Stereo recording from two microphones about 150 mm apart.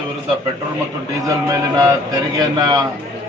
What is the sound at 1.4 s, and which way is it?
A man's voice, 20° right (ahead or behind).